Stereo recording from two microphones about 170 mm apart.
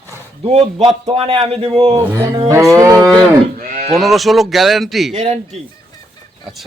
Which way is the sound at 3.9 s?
Centre (ahead or behind).